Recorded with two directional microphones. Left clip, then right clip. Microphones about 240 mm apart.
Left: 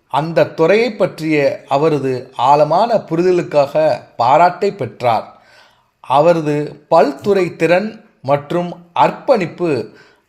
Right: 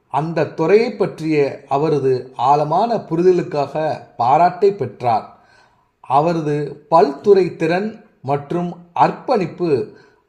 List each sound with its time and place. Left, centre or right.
0.6 s speech: left